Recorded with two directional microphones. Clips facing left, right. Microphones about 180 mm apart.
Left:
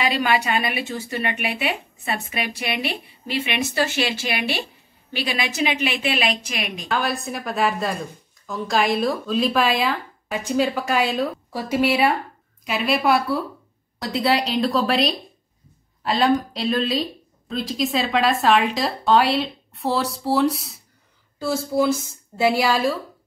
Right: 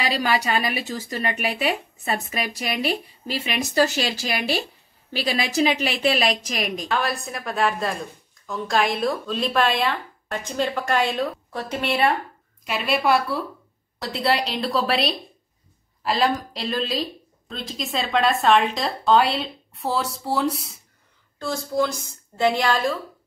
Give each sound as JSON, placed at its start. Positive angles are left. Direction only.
{"t": 0.0, "sound": "a woman's voice", "side_deg": -35}
{"t": 6.9, "sound": "a woman's voice", "side_deg": 0}